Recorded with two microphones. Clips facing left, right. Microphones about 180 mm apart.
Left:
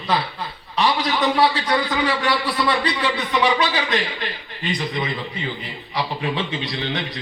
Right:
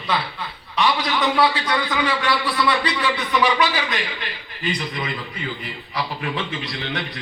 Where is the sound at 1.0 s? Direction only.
25° left (ahead or behind).